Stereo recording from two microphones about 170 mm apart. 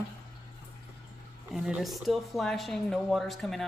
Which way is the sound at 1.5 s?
Centre (ahead or behind).